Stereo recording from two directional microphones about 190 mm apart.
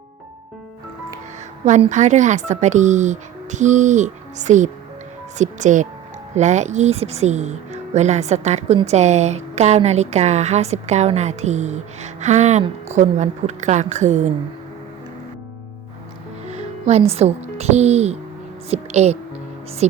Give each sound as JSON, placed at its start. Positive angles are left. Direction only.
{"t": 1.6, "sound": "speech", "side_deg": -40}
{"t": 16.5, "sound": "speech", "side_deg": -35}